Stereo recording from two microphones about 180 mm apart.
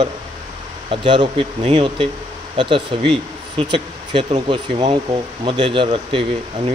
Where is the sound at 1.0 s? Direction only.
25° right (ahead or behind).